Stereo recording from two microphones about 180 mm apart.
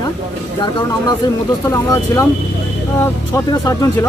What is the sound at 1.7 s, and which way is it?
Speech, 20° left (ahead or behind).